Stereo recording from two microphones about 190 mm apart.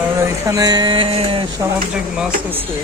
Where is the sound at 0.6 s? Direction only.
20° right (ahead or behind).